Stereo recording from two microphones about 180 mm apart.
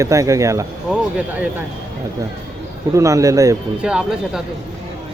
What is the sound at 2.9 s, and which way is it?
Speech, 15° right (ahead or behind).